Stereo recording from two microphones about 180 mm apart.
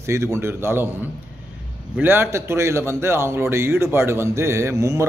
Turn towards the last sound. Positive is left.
turn(degrees=-15)  # may be behind; listen again after turning